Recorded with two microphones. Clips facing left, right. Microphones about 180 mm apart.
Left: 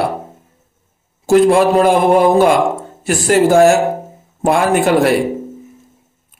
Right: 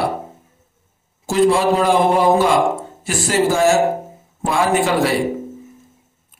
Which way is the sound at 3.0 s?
55° left (ahead or behind).